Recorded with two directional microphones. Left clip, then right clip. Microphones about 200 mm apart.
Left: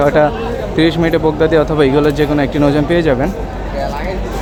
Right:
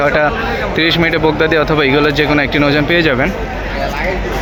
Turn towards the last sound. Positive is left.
turn(degrees=10)  # may be behind; listen again after turning